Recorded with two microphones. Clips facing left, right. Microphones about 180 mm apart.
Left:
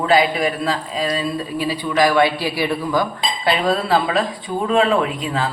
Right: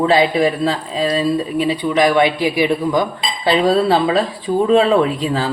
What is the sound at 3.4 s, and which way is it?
Speech, 30° right (ahead or behind).